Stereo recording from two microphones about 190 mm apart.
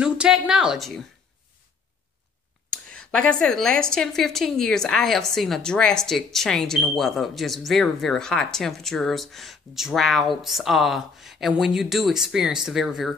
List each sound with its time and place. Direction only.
0.0 s a woman's voice: 5° right (ahead or behind)
2.7 s speech: 5° left (ahead or behind)